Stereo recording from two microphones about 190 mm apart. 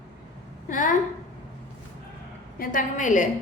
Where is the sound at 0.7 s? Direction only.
45° left (ahead or behind).